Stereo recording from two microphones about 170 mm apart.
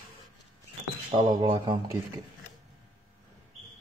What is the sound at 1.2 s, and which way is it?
Speech, 25° right (ahead or behind).